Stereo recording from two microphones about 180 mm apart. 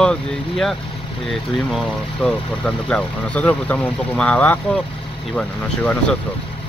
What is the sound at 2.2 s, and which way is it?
Speech, centre (ahead or behind).